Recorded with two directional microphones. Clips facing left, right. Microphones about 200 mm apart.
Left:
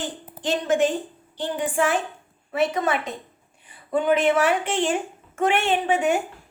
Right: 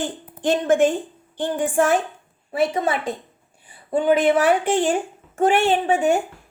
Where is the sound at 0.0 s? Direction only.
50° right (ahead or behind).